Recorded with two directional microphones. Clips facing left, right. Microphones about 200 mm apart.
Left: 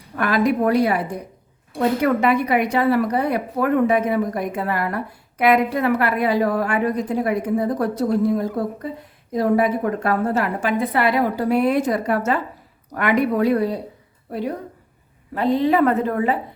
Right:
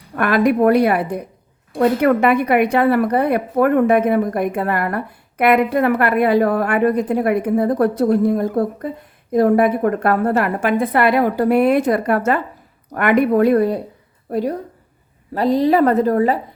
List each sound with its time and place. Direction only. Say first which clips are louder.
0.2 s a woman's voice: right 4 dB; 60° right (ahead or behind); by 16.4 s 40° right (ahead or behind)